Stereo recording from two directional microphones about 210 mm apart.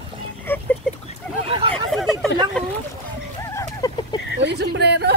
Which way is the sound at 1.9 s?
Centre (ahead or behind).